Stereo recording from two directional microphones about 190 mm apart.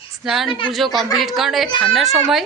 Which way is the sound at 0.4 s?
25° left (ahead or behind).